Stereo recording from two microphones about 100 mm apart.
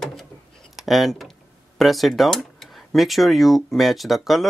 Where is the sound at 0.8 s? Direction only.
Centre (ahead or behind).